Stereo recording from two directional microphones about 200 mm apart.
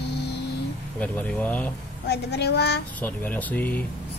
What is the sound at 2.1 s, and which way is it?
Speech, 55° left (ahead or behind).